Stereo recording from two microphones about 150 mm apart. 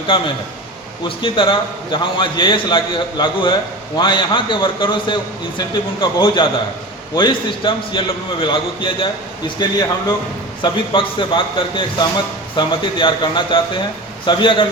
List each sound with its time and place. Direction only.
1.0 s a man's voice: 35° left (ahead or behind)